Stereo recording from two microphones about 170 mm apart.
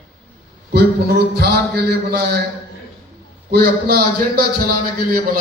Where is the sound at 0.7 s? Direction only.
70° right (ahead or behind).